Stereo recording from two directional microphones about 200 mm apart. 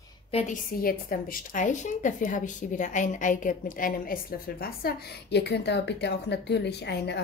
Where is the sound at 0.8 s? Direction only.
45° left (ahead or behind).